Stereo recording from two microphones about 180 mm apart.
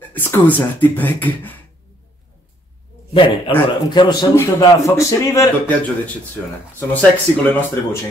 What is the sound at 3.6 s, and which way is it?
A man's voice, 25° left (ahead or behind).